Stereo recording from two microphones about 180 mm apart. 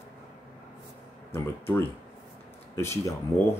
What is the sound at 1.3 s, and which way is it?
Speech, 10° left (ahead or behind).